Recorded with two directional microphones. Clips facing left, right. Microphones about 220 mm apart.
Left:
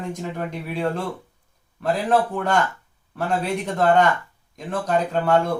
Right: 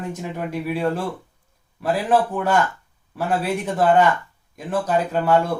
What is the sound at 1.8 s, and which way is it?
Speech, 5° right (ahead or behind).